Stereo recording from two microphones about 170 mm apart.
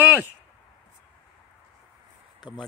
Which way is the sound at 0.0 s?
10° right (ahead or behind).